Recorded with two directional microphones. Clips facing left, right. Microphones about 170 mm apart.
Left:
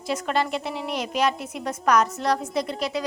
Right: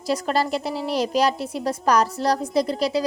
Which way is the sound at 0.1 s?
35° right (ahead or behind).